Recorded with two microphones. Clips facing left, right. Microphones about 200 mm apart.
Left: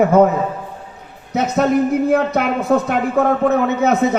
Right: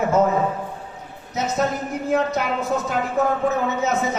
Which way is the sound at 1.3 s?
60° left (ahead or behind).